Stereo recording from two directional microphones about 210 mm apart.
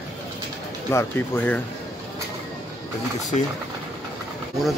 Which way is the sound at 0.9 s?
10° left (ahead or behind).